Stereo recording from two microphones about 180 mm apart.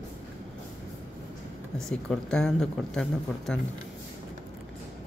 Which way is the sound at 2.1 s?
Centre (ahead or behind).